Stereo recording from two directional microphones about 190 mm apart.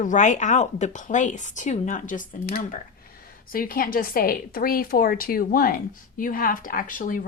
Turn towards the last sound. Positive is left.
turn(degrees=45)  # may be behind; listen again after turning